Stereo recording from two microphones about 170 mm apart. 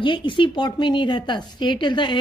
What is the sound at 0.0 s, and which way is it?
A woman's voice, 30° left (ahead or behind).